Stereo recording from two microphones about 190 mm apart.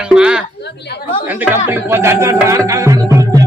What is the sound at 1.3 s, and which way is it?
Speech, 10° right (ahead or behind).